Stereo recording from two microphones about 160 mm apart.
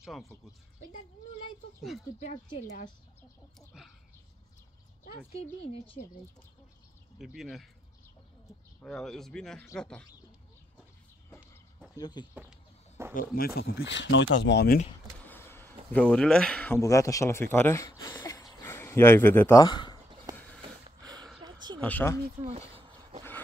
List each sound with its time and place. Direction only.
0.0 s speech: centre (ahead or behind)
1.8 s speech: centre (ahead or behind)
5.3 s speech: 40° left (ahead or behind)
7.2 s speech: centre (ahead or behind)
8.8 s speech: 5° left (ahead or behind)
12.0 s speech: 25° left (ahead or behind)
12.4 s chicken: 15° right (ahead or behind)
13.1 s speech: 65° left (ahead or behind); by 14.8 s 90° left
15.2 s speech: 15° left (ahead or behind)
19.6 s speech: 25° left (ahead or behind)
20.3 s a sound: 5° left (ahead or behind)
20.6 s a sound: 25° right (ahead or behind)
21.8 s speech: 15° left (ahead or behind)
22.4 s a sound: 40° right (ahead or behind)